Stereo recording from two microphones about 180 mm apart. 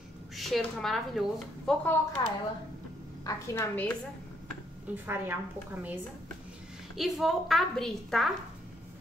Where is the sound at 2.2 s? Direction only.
20° left (ahead or behind).